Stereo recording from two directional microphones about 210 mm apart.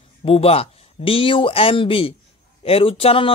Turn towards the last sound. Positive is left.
turn(degrees=25)  # may be behind; listen again after turning